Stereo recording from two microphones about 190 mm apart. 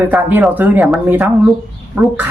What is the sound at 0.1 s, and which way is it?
Speech, 5° right (ahead or behind).